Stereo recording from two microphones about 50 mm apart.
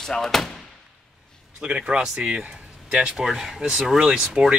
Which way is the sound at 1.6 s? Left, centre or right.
Centre.